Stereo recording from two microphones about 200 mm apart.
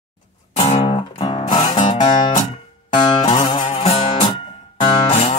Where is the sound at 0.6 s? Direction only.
30° left (ahead or behind).